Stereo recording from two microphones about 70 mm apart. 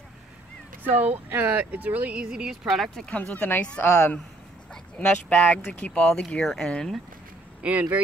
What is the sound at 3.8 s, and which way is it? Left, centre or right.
Speech, left.